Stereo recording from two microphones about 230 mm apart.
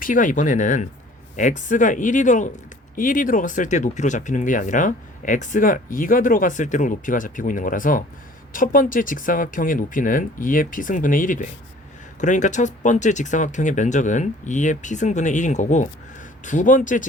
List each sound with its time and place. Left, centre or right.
0.0 s speech: left